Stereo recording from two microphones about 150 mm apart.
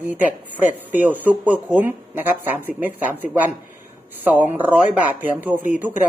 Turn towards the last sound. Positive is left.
turn(degrees=-10)  # may be behind; listen again after turning